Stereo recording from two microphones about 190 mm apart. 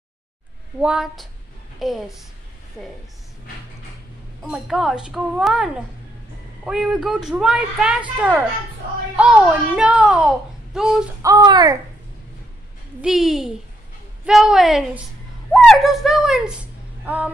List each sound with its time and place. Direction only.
0.7 s speech: 5° right (ahead or behind)
4.4 s speech: centre (ahead or behind)
9.1 s speech: 5° right (ahead or behind)
11.2 s speech: 20° right (ahead or behind)
13.0 s speech: centre (ahead or behind)
17.0 s a sound: 10° right (ahead or behind)